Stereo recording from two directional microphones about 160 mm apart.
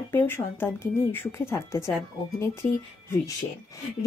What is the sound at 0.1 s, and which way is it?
A woman's voice, 15° left (ahead or behind).